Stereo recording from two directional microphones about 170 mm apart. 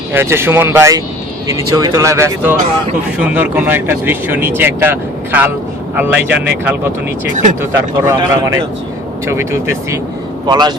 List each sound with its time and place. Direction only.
0.1 s speech: 15° right (ahead or behind)